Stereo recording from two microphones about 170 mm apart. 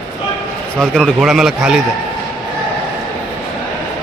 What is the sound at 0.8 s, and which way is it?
A man's voice, centre (ahead or behind).